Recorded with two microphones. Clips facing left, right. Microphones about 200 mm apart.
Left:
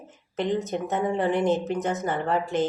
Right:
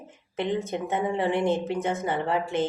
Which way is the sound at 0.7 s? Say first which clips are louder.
Left 1 dB; 10° right (ahead or behind).